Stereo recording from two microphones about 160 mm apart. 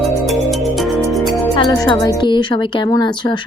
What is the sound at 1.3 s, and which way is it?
Speech, 25° left (ahead or behind).